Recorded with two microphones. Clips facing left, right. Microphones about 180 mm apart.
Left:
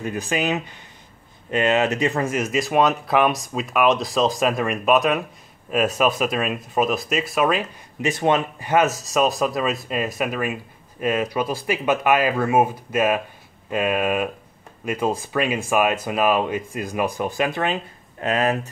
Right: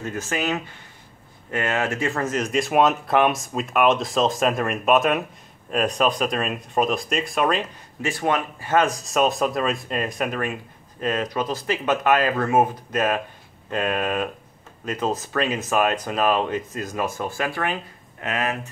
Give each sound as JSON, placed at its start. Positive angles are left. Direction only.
{"t": 0.0, "sound": "speech", "side_deg": 15}
{"t": 8.0, "sound": "speech", "side_deg": 20}
{"t": 18.2, "sound": "speech", "side_deg": 35}